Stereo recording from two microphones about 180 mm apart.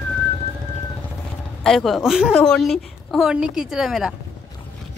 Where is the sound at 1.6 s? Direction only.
Centre (ahead or behind).